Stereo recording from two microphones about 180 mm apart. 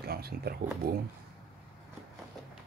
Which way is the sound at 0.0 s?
60° right (ahead or behind).